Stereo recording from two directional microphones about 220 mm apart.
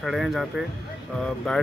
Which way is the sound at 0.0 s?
Centre (ahead or behind).